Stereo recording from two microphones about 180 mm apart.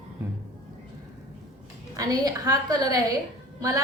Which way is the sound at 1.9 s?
20° right (ahead or behind).